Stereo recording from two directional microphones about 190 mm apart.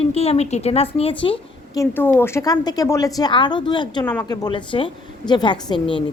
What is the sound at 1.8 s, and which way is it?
A woman's voice, 10° left (ahead or behind).